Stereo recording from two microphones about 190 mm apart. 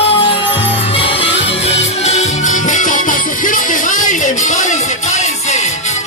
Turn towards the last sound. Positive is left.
turn(degrees=40)  # may be behind; listen again after turning